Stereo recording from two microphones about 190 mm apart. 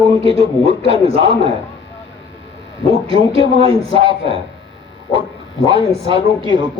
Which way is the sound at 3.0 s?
30° right (ahead or behind).